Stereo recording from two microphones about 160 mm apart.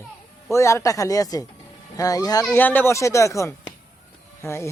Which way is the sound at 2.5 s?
10° left (ahead or behind).